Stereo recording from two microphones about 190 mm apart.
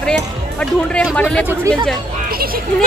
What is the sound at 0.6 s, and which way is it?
Speech, 5° left (ahead or behind).